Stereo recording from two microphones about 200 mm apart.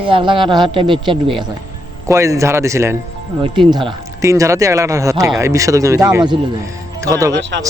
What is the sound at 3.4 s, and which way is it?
Speech, 25° right (ahead or behind).